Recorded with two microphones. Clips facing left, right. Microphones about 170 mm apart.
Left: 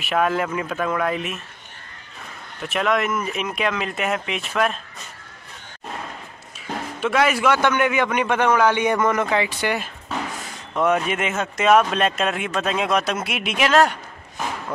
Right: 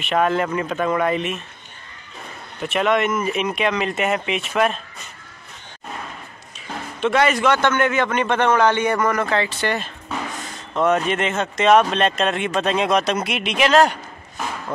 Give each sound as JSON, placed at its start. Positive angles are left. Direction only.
{"t": 0.0, "sound": "speech", "side_deg": 5}
{"t": 2.6, "sound": "speech", "side_deg": 0}
{"t": 7.0, "sound": "a man's voice", "side_deg": 5}